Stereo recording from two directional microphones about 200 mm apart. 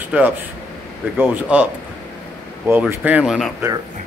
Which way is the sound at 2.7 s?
10° right (ahead or behind).